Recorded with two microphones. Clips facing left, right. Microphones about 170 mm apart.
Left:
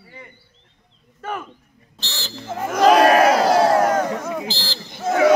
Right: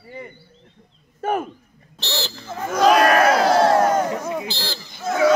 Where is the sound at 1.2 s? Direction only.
50° right (ahead or behind).